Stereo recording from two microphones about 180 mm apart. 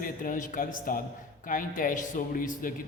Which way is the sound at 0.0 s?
50° left (ahead or behind).